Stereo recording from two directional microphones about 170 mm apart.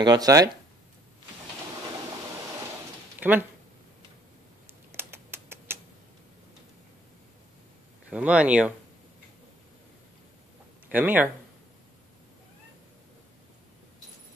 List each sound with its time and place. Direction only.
0.0 s speech: 25° right (ahead or behind)
3.2 s speech: 10° right (ahead or behind)
4.9 s typing: 15° right (ahead or behind)
8.1 s speech: 5° right (ahead or behind)
10.9 s speech: 10° right (ahead or behind)